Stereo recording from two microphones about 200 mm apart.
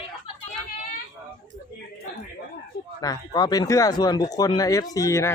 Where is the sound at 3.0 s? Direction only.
20° left (ahead or behind).